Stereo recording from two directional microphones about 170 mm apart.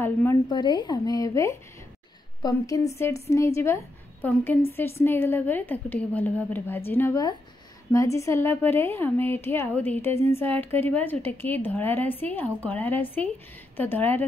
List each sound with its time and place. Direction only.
0.0 s a woman's voice: 15° left (ahead or behind)
0.5 s a woman's voice: 25° left (ahead or behind); by 14.2 s 10° left (ahead or behind)